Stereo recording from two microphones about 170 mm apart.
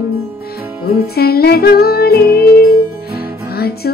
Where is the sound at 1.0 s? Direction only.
65° left (ahead or behind).